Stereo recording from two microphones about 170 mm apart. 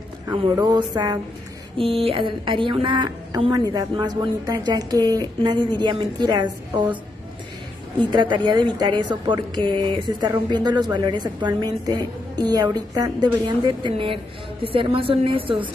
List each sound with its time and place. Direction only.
0.3 s a woman's voice: 25° right (ahead or behind)
1.8 s a woman's voice: 35° right (ahead or behind)
8.1 s a woman's voice: 25° right (ahead or behind)